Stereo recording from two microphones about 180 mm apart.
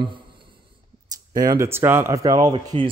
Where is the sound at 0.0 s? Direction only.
25° right (ahead or behind).